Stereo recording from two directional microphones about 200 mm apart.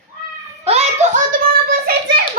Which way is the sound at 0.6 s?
35° right (ahead or behind).